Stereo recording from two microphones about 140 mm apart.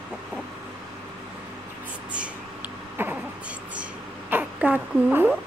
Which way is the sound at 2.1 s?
10° right (ahead or behind).